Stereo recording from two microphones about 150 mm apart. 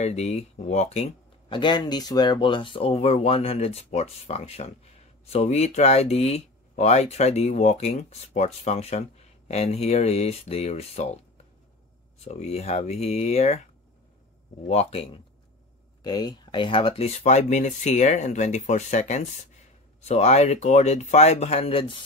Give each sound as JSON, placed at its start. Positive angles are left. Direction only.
{"t": 0.0, "sound": "speech", "side_deg": 45}
{"t": 1.6, "sound": "speech", "side_deg": 30}
{"t": 12.2, "sound": "speech", "side_deg": 45}
{"t": 14.7, "sound": "speech", "side_deg": 45}
{"t": 16.0, "sound": "speech", "side_deg": 25}